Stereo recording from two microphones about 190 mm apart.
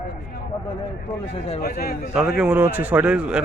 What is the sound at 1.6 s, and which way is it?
Speech, 55° left (ahead or behind).